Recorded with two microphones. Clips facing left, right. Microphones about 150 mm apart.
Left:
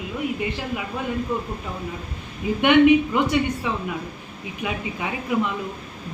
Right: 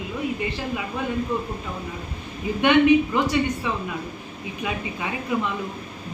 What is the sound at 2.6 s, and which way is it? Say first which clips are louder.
Speech: left 2 dB; 20° left (ahead or behind).